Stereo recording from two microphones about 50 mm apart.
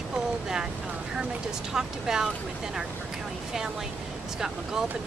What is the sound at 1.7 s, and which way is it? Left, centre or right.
Speech, centre.